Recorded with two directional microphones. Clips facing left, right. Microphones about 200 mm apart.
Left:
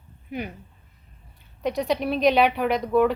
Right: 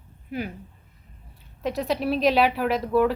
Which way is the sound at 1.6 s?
Centre (ahead or behind).